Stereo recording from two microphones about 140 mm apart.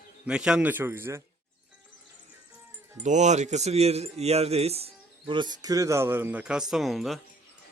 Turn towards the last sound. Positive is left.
turn(degrees=0)  # may be behind; listen again after turning